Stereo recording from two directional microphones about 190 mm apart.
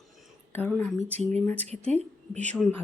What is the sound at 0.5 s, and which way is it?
Speech, 5° left (ahead or behind).